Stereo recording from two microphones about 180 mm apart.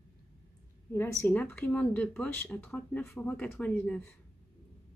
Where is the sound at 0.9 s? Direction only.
10° left (ahead or behind).